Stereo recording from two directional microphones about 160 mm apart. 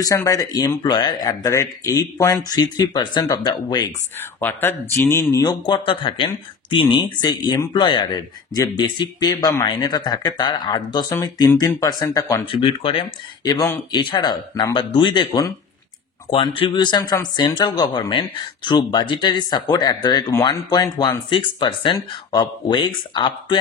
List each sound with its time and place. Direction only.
0.0 s speech: 20° left (ahead or behind)
4.4 s speech: 15° left (ahead or behind)
12.4 s speech: 35° left (ahead or behind)